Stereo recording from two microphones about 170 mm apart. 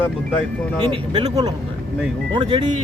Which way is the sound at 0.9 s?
25° right (ahead or behind).